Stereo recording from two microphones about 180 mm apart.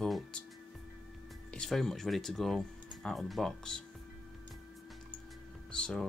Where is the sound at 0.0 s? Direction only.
5° left (ahead or behind).